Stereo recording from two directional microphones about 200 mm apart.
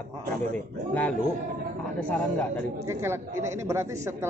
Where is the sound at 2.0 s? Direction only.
5° left (ahead or behind).